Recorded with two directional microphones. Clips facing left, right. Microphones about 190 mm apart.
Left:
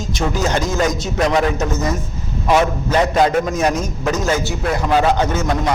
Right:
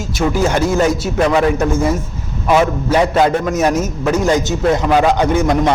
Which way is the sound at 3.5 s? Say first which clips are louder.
Right 3 dB; 5° right (ahead or behind).